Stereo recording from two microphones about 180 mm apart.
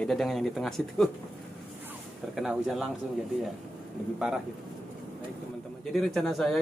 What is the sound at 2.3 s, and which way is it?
Speech, centre (ahead or behind).